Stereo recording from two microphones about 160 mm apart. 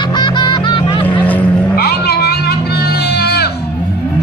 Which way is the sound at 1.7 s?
80° left.